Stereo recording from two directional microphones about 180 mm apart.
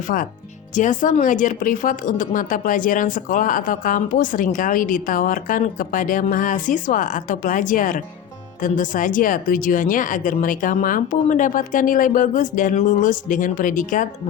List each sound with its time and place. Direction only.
0.1 s a woman's voice: 50° left (ahead or behind)